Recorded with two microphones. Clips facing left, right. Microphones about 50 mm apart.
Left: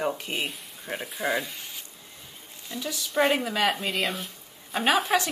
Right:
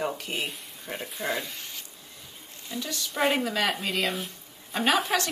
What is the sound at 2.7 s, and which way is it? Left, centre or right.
A woman's voice, centre.